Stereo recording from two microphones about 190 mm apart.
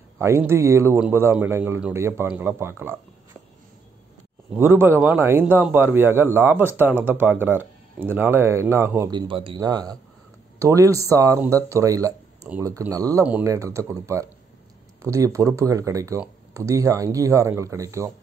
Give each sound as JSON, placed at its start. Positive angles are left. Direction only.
{"t": 0.5, "sound": "speech", "side_deg": -15}
{"t": 4.6, "sound": "speech", "side_deg": -10}
{"t": 9.1, "sound": "speech", "side_deg": -25}